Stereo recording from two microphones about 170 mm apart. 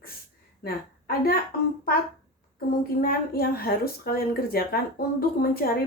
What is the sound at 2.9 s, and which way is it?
A woman's voice, 60° left (ahead or behind).